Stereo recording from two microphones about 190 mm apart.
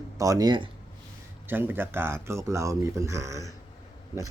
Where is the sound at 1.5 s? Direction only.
10° right (ahead or behind).